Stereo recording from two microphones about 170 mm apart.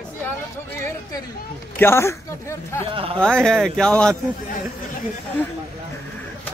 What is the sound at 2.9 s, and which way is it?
Speech, 30° right (ahead or behind).